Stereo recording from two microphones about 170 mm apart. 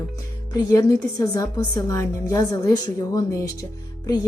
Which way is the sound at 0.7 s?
20° left (ahead or behind).